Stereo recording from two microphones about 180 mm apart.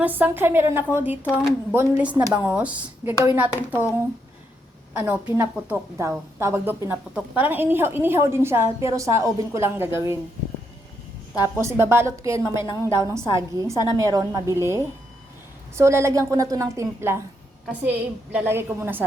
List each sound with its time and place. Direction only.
0.0 s a woman's voice: 10° right (ahead or behind)
4.9 s a woman's voice: 10° right (ahead or behind)
11.4 s a woman's voice: 15° right (ahead or behind)